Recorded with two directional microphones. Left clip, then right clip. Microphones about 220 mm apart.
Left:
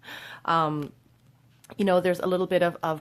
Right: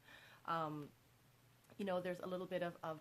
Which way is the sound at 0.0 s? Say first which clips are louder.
Left 19 dB; 35° left (ahead or behind).